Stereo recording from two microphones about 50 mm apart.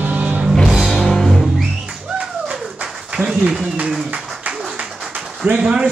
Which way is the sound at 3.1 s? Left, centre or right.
Centre.